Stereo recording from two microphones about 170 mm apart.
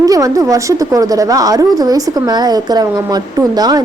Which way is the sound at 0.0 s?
20° right (ahead or behind).